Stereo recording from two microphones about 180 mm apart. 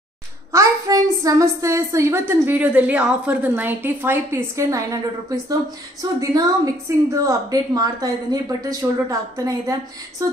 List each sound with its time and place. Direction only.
0.5 s a woman's voice: 20° right (ahead or behind)